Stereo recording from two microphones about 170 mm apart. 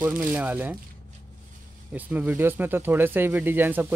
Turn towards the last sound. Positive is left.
turn(degrees=-10)  # may be behind; listen again after turning